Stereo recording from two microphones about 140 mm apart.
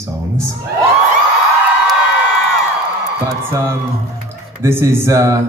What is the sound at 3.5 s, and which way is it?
Speech, 20° right (ahead or behind).